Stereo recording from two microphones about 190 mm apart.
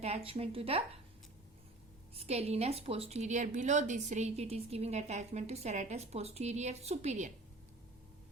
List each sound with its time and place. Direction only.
0.0 s a woman's voice: 30° right (ahead or behind)
2.1 s a woman's voice: 35° right (ahead or behind)